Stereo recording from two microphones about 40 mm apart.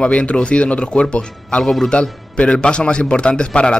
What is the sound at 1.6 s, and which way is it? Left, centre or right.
Speech, centre.